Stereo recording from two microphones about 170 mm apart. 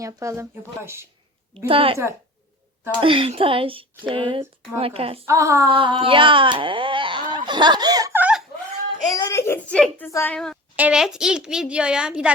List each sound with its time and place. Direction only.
0.0 s speech: 20° right (ahead or behind)
1.6 s speech: 35° right (ahead or behind)
3.0 s speech: 30° right (ahead or behind)
5.2 s speech: 15° right (ahead or behind)
5.7 s speech: 30° right (ahead or behind)
8.2 s a sound: 5° right (ahead or behind)
9.1 s whimper: 20° left (ahead or behind)
10.1 s a woman's voice: 15° left (ahead or behind)
10.3 s a child's voice: 5° left (ahead or behind)